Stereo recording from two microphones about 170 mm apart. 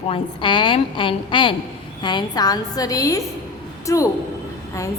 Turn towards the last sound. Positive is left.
turn(degrees=20)  # may be behind; listen again after turning